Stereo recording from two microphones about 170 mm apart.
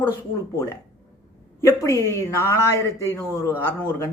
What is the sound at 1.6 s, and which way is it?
Speech, 15° left (ahead or behind).